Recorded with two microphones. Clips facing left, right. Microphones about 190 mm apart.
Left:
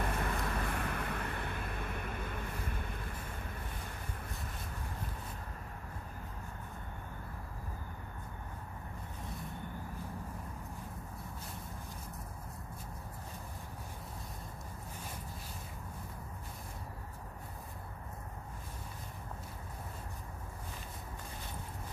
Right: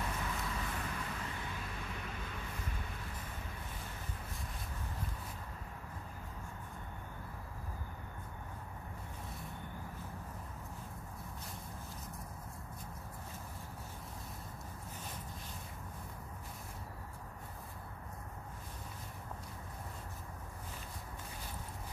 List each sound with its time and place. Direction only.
0.0 s vehicle: 55° left (ahead or behind)